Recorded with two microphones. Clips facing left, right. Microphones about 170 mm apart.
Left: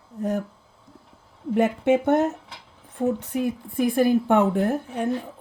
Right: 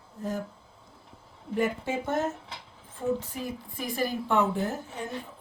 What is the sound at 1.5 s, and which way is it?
Speech, 65° left (ahead or behind).